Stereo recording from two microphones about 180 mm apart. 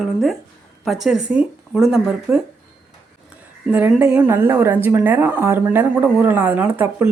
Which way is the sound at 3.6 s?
10° right (ahead or behind).